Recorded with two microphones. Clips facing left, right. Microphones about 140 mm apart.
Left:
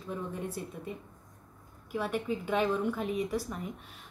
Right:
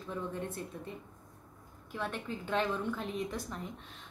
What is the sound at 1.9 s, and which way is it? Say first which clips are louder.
Speech: left 6 dB; 10° left (ahead or behind).